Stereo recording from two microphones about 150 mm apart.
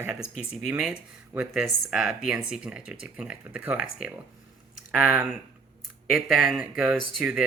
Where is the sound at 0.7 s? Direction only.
10° right (ahead or behind).